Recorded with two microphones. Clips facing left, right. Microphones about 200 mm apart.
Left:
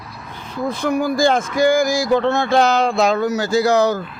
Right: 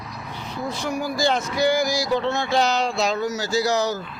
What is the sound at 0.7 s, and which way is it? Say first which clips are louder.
Speech: left 8 dB; 55° left (ahead or behind).